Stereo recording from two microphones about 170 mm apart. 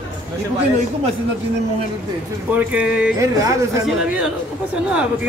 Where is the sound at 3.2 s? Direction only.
20° right (ahead or behind).